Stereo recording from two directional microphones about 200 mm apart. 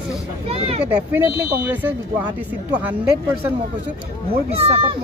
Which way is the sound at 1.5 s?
10° right (ahead or behind).